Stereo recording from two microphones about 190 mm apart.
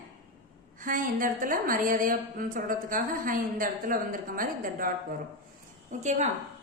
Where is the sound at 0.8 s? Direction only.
45° right (ahead or behind).